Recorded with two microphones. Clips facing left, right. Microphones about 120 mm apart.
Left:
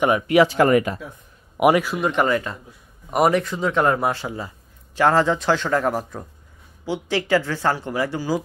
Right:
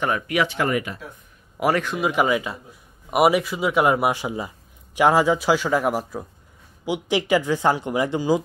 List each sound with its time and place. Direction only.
0.3 s speech: 35° left (ahead or behind)
1.6 s a man's voice: 15° left (ahead or behind)
1.9 s speech: 5° right (ahead or behind)